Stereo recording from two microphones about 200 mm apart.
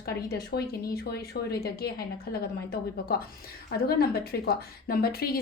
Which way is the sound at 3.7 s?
50° left (ahead or behind).